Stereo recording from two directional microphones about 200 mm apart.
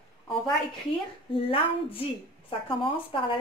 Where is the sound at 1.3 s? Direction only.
25° left (ahead or behind).